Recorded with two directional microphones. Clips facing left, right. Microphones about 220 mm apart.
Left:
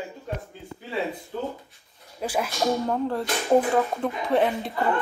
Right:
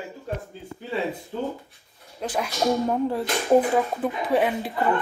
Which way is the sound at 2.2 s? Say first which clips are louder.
Left 1 dB; 10° left (ahead or behind).